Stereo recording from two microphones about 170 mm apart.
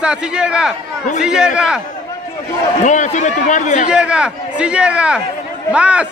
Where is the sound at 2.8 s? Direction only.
45° left (ahead or behind).